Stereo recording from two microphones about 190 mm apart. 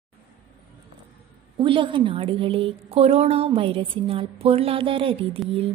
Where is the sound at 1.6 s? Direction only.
25° right (ahead or behind).